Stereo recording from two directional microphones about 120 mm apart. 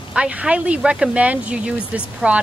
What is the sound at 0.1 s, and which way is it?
Speech, 10° right (ahead or behind).